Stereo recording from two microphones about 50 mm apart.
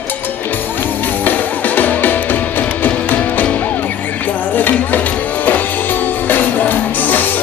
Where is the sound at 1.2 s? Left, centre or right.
Left.